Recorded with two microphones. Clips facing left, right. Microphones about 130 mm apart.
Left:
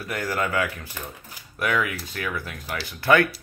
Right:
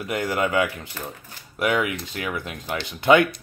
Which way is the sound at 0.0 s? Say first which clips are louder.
Right 3 dB; 20° right (ahead or behind).